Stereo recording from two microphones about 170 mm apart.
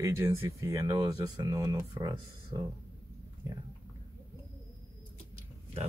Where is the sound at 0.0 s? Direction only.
15° right (ahead or behind).